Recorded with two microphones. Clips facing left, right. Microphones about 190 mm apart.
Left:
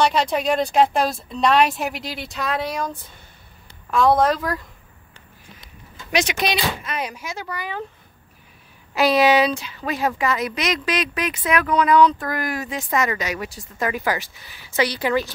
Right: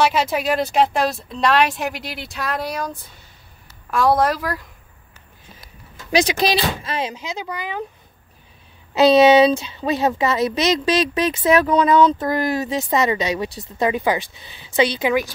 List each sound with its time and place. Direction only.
0.0 s a woman's voice: 5° right (ahead or behind)
6.1 s a woman's voice: 35° right (ahead or behind); by 7.8 s 15° right (ahead or behind)
8.9 s a woman's voice: 25° right (ahead or behind)